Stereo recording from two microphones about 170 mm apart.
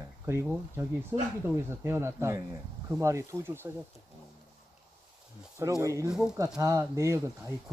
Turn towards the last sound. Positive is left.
turn(degrees=-15)  # may be behind; listen again after turning